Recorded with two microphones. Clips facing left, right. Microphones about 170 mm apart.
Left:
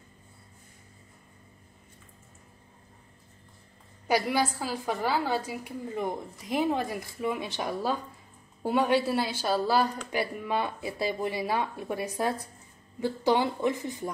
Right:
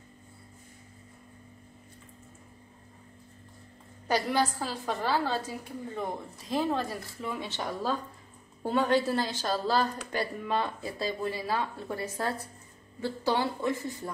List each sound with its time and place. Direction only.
4.1 s a woman's voice: 10° left (ahead or behind)